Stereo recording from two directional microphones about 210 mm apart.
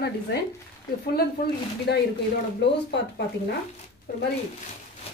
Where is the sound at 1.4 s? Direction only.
45° left (ahead or behind).